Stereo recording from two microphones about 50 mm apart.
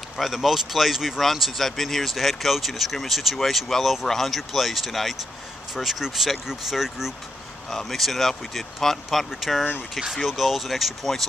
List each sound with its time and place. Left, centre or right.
0.2 s speech: centre